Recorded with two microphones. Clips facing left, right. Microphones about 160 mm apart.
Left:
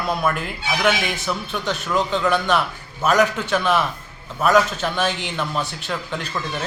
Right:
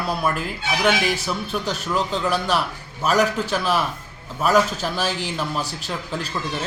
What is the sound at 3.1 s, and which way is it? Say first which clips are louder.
Speech: left 1 dB; 35° right (ahead or behind).